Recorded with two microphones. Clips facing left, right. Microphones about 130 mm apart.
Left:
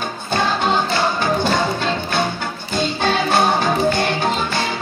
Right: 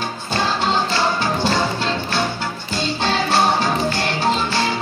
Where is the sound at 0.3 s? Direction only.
50° left (ahead or behind).